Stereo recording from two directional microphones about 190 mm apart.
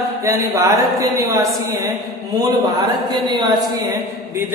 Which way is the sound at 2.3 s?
20° right (ahead or behind).